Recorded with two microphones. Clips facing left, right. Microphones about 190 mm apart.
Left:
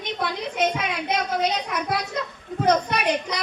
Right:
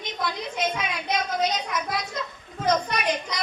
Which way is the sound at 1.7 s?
65° left (ahead or behind).